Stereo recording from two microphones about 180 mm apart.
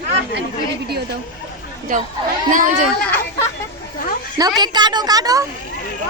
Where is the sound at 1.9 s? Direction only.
45° right (ahead or behind).